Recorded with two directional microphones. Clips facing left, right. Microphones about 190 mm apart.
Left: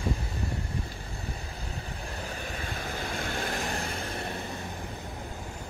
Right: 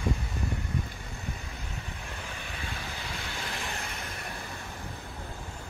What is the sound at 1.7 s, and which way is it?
Vehicle, 35° left (ahead or behind).